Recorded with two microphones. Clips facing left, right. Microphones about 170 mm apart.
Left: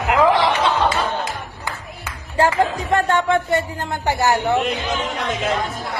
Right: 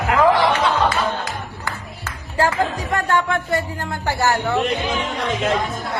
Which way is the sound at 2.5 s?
25° left (ahead or behind).